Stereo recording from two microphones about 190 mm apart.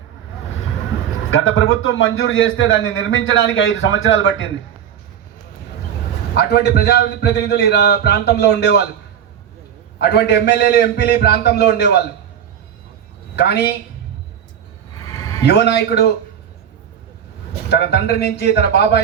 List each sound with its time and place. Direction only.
1.3 s a man's voice: 90° left
6.3 s a man's voice: 60° left (ahead or behind)
10.0 s a man's voice: 60° left (ahead or behind)
13.3 s a man's voice: 60° left (ahead or behind)
14.9 s a sound: 20° left (ahead or behind)
15.4 s a man's voice: 60° left (ahead or behind)
17.7 s a man's voice: 60° left (ahead or behind)